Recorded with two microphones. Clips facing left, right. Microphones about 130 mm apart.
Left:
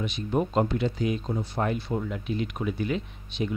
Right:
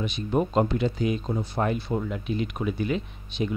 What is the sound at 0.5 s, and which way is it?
Speech, 15° right (ahead or behind).